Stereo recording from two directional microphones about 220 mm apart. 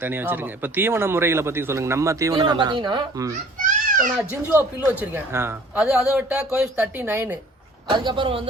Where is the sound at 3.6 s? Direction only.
35° right (ahead or behind).